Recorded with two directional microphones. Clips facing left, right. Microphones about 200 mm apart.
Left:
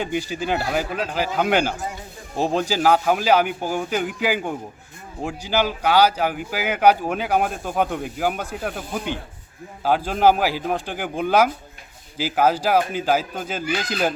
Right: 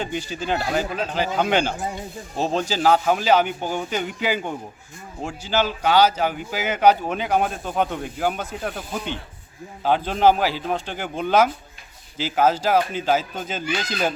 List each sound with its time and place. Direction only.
0.0 s speech: 10° left (ahead or behind)